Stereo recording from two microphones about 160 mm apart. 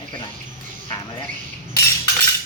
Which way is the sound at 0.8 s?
25° left (ahead or behind).